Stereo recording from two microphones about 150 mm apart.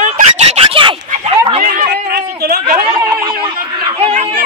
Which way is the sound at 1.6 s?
55° right (ahead or behind).